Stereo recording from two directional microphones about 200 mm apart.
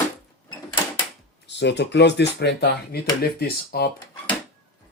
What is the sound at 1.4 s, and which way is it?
Speech, 60° left (ahead or behind).